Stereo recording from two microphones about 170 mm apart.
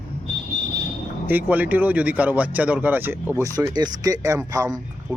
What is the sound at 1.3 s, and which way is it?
Speech, 10° right (ahead or behind).